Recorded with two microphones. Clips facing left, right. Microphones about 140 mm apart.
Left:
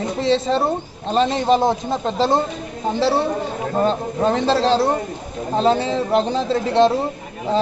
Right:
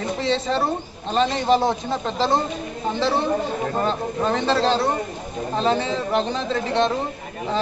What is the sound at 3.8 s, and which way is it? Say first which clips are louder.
A man's voice: left 7 dB; 30° left (ahead or behind).